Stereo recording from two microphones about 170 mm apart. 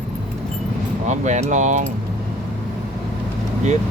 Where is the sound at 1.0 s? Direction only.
45° right (ahead or behind).